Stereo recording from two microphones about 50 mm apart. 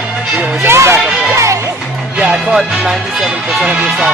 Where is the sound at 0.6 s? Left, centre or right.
Right.